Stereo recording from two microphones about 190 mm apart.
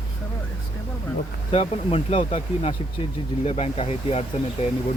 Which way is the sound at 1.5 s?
35° left (ahead or behind).